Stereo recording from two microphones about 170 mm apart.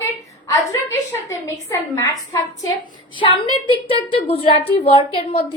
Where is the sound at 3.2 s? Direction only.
30° left (ahead or behind).